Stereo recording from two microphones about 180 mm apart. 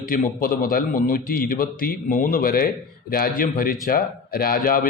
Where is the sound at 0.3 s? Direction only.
50° left (ahead or behind).